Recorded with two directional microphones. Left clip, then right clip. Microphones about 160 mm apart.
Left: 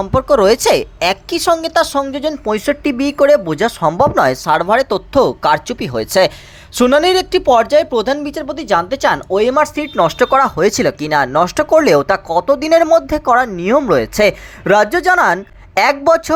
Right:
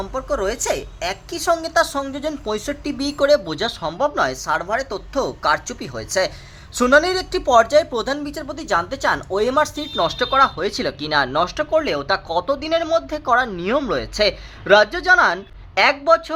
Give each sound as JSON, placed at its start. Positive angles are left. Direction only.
{"t": 0.1, "sound": "speech", "side_deg": 45}
{"t": 4.2, "sound": "speech", "side_deg": 45}
{"t": 10.2, "sound": "speech", "side_deg": 50}
{"t": 11.3, "sound": "speech", "side_deg": 50}
{"t": 12.0, "sound": "speech", "side_deg": 30}
{"t": 12.5, "sound": "speech", "side_deg": 45}